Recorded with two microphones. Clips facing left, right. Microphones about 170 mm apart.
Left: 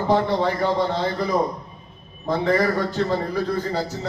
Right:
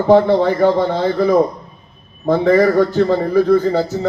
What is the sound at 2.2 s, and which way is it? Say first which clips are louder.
A man's voice: right 8 dB; 50° right (ahead or behind).